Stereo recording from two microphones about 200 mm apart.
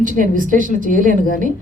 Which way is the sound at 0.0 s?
40° right (ahead or behind).